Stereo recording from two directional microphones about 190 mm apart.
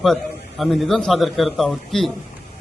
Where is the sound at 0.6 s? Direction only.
Centre (ahead or behind).